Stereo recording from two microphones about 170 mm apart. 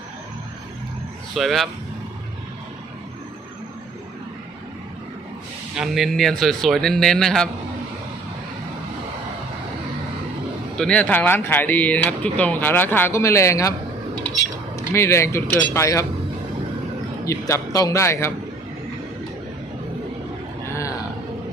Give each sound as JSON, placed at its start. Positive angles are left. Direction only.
{"t": 1.4, "sound": "speech", "side_deg": 0}
{"t": 5.7, "sound": "speech", "side_deg": 0}
{"t": 10.8, "sound": "speech", "side_deg": 5}
{"t": 14.8, "sound": "speech", "side_deg": 15}
{"t": 17.2, "sound": "speech", "side_deg": 20}